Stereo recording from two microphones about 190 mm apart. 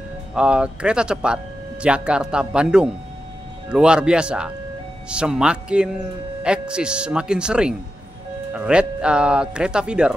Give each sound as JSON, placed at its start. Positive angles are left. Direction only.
{"t": 0.3, "sound": "speech", "side_deg": -5}